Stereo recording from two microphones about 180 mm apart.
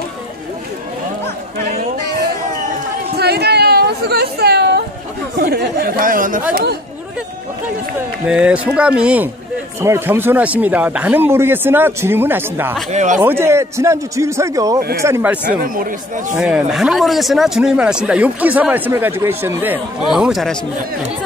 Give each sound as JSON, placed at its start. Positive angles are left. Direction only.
{"t": 1.7, "sound": "chatter", "side_deg": -55}
{"t": 5.4, "sound": "speech", "side_deg": -60}
{"t": 6.5, "sound": "speech", "side_deg": -65}
{"t": 8.3, "sound": "speech", "side_deg": -5}
{"t": 12.9, "sound": "speech", "side_deg": -45}
{"t": 13.2, "sound": "speech", "side_deg": -15}
{"t": 15.6, "sound": "speech", "side_deg": -50}
{"t": 16.3, "sound": "speech", "side_deg": -5}